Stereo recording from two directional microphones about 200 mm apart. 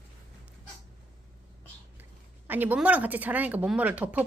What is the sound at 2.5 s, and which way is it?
Speech, 10° right (ahead or behind).